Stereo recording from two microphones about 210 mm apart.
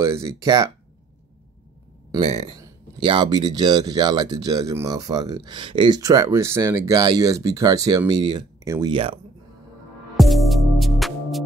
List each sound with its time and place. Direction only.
0.2 s speech: 20° right (ahead or behind)
2.1 s speech: 30° right (ahead or behind)
2.5 s speech: 20° right (ahead or behind)
10.1 s music: centre (ahead or behind)